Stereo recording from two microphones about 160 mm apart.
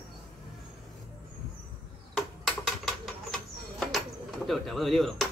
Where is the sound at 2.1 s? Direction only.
5° left (ahead or behind).